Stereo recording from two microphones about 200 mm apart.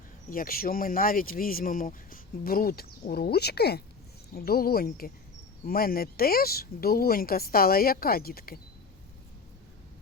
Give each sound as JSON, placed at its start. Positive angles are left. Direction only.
{"t": 0.3, "sound": "speech", "side_deg": 45}